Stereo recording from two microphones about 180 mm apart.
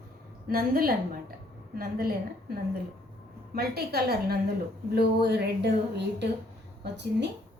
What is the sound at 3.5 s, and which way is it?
A woman's voice, 60° right (ahead or behind).